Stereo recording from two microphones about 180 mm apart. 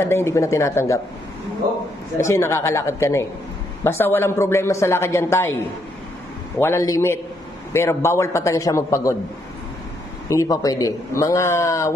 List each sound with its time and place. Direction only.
0.0 s a man's voice: 15° left (ahead or behind)
2.1 s a man's voice: 15° left (ahead or behind)
6.6 s a man's voice: 15° left (ahead or behind)
10.2 s a man's voice: 20° left (ahead or behind)